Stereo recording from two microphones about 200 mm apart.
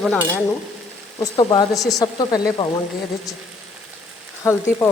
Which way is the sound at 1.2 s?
20° left (ahead or behind).